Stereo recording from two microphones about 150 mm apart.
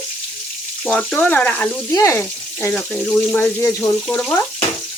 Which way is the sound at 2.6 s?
5° left (ahead or behind).